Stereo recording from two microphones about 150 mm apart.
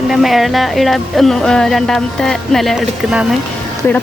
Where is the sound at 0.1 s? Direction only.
Centre (ahead or behind).